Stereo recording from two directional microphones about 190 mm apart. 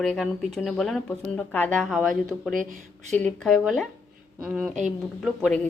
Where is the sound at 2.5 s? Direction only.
40° right (ahead or behind).